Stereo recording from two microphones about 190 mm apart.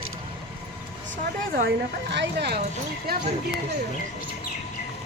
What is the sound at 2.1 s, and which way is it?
Speech, 60° right (ahead or behind).